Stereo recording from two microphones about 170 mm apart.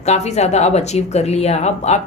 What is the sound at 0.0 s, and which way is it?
Speech, 40° left (ahead or behind).